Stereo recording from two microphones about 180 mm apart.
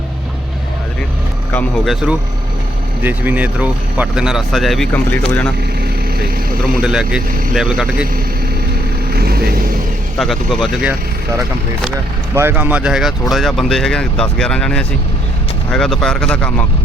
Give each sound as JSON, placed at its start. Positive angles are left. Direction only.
{"t": 1.8, "sound": "speech", "side_deg": 0}
{"t": 6.8, "sound": "speech", "side_deg": -5}
{"t": 9.1, "sound": "vehicle", "side_deg": -60}
{"t": 10.2, "sound": "speech", "side_deg": 0}
{"t": 12.3, "sound": "speech", "side_deg": -15}